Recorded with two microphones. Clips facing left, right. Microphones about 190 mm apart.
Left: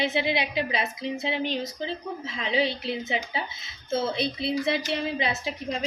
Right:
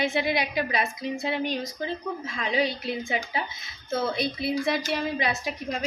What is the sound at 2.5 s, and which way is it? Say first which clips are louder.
A woman's voice: even; 25° left (ahead or behind).